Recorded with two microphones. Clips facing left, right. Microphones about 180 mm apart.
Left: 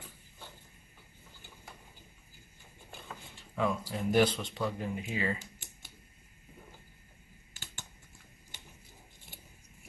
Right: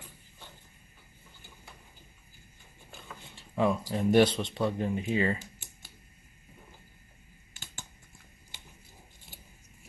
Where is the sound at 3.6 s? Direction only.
30° right (ahead or behind).